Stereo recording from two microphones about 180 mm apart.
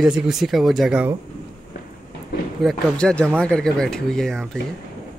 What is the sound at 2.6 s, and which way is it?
Speech, centre (ahead or behind).